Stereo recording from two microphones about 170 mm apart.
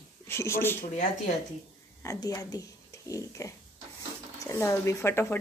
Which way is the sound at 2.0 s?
20° left (ahead or behind).